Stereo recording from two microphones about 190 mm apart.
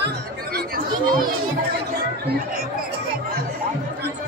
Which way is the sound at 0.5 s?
50° right (ahead or behind).